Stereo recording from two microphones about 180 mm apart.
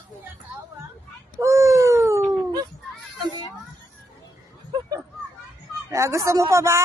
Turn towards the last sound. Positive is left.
turn(degrees=-15)  # may be behind; listen again after turning